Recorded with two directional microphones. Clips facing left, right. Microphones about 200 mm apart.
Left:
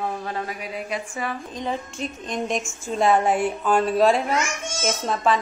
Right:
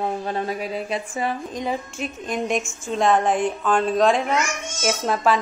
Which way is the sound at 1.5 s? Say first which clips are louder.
Right 2 dB; 5° right (ahead or behind).